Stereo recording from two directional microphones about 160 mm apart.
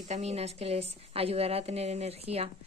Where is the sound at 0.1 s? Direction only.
45° right (ahead or behind).